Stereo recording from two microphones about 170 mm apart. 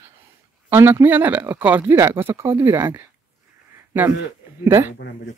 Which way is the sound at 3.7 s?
10° right (ahead or behind).